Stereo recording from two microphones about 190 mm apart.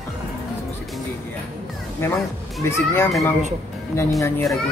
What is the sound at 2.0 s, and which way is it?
A man's voice, 15° left (ahead or behind).